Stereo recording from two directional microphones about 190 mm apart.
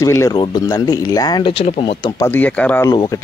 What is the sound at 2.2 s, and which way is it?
Speech, 10° left (ahead or behind).